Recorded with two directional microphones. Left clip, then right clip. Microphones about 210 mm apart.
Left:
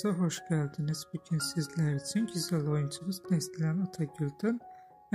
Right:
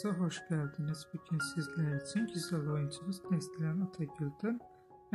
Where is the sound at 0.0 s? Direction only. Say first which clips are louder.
Left 5 dB; 25° left (ahead or behind).